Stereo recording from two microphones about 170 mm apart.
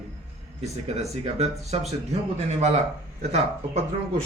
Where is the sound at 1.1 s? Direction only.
40° right (ahead or behind).